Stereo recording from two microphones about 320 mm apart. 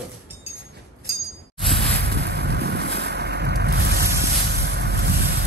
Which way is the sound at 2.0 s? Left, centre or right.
Right.